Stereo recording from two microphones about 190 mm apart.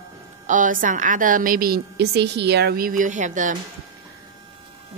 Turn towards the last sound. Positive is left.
turn(degrees=-40)  # may be behind; listen again after turning